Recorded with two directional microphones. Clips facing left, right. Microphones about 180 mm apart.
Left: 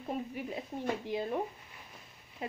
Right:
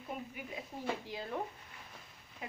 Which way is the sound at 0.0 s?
35° left (ahead or behind).